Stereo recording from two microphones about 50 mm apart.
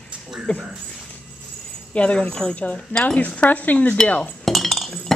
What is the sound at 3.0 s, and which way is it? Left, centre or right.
Cutlery, left.